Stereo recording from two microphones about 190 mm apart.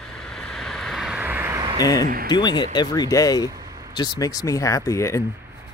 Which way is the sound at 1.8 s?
20° left (ahead or behind).